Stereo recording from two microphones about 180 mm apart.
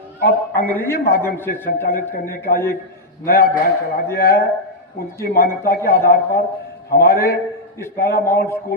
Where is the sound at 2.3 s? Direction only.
55° left (ahead or behind).